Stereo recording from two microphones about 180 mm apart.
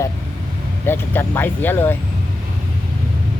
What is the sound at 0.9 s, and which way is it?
Speech, 10° left (ahead or behind).